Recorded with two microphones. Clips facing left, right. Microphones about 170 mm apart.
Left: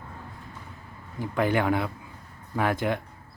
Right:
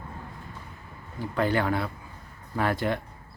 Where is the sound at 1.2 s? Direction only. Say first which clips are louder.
Left 1 dB; 15° left (ahead or behind).